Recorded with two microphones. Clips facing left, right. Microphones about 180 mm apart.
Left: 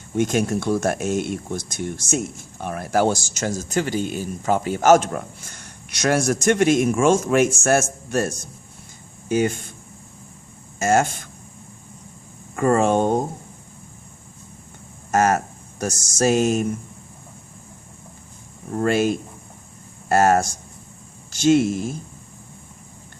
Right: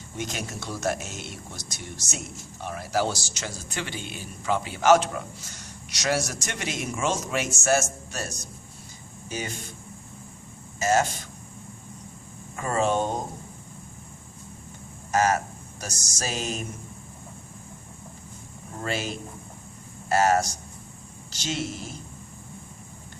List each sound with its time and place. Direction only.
0.2 s speech: 55° left (ahead or behind)
10.8 s speech: 50° left (ahead or behind)
12.5 s speech: 50° left (ahead or behind)
15.1 s a sound: 50° left (ahead or behind)
15.8 s speech: 50° left (ahead or behind)
18.8 s speech: 50° left (ahead or behind)